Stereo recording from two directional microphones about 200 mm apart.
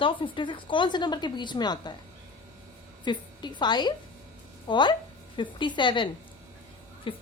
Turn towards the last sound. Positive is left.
turn(degrees=25)  # may be behind; listen again after turning